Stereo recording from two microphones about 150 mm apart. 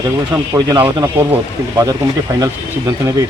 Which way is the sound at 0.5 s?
20° right (ahead or behind).